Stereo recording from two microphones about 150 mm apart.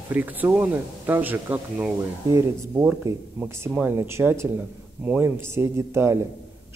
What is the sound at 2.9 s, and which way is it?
Speech, 10° right (ahead or behind).